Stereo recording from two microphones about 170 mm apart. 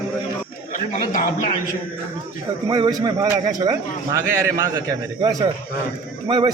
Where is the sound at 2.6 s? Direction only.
25° right (ahead or behind).